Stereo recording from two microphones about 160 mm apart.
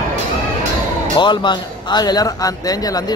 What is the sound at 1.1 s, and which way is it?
A man's voice, 30° left (ahead or behind).